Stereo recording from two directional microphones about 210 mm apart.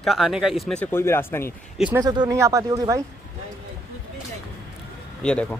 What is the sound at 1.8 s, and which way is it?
Speech, 20° right (ahead or behind).